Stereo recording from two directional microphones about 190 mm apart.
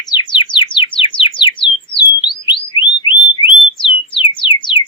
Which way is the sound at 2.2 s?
25° left (ahead or behind).